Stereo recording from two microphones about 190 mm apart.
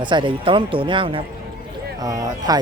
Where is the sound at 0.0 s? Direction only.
25° right (ahead or behind).